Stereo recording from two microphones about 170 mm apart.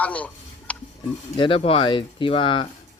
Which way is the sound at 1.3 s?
30° left (ahead or behind).